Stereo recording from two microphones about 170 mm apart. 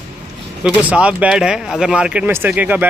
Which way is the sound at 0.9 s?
5° right (ahead or behind).